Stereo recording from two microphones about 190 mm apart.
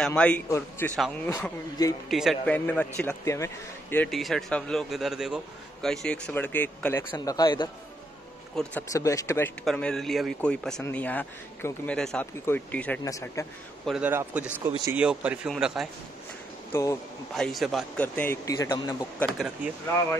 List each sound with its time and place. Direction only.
0.0 s a man's voice: 5° left (ahead or behind)
2.0 s a man's voice: centre (ahead or behind)
4.1 s a man's voice: centre (ahead or behind); by 7.7 s 25° left (ahead or behind)
8.6 s a man's voice: 5° left (ahead or behind)
8.9 s a man's voice: 15° left (ahead or behind)
9.7 s a man's voice: 5° left (ahead or behind)
13.8 s a man's voice: 5° right (ahead or behind)
14.6 s a man's voice: 20° right (ahead or behind)
15.0 s a man's voice: 5° right (ahead or behind)
16.7 s a man's voice: 15° left (ahead or behind)
17.4 s a man's voice: centre (ahead or behind); by 19.0 s 20° left (ahead or behind)
19.1 s a man's voice: centre (ahead or behind)